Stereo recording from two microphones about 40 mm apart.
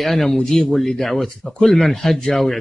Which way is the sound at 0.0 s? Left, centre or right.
Centre.